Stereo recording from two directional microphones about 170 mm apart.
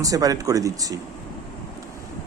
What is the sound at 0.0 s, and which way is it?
Speech, 20° right (ahead or behind).